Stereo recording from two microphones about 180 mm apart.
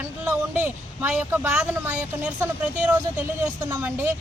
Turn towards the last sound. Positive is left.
turn(degrees=-10)  # may be behind; listen again after turning